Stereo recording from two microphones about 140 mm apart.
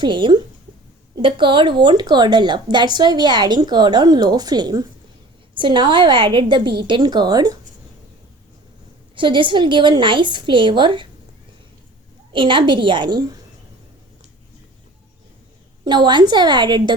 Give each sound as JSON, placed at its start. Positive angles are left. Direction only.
{"t": 0.0, "sound": "a woman's voice", "side_deg": -35}
{"t": 9.1, "sound": "a woman's voice", "side_deg": -35}
{"t": 12.3, "sound": "a woman's voice", "side_deg": -35}
{"t": 15.8, "sound": "a woman's voice", "side_deg": -30}